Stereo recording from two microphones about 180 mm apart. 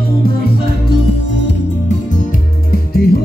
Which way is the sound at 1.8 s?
45° left (ahead or behind).